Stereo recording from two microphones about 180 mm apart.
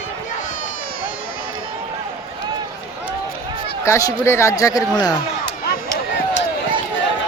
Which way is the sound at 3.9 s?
15° left (ahead or behind).